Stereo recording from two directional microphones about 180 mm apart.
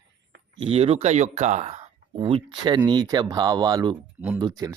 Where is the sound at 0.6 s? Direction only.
35° right (ahead or behind).